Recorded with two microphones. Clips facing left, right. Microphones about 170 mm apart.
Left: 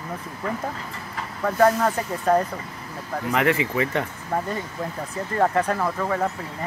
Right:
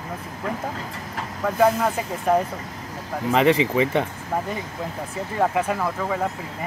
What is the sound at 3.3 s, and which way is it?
Speech, 20° right (ahead or behind).